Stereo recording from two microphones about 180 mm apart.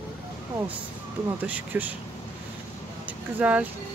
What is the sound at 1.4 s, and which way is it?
Speech, 10° right (ahead or behind).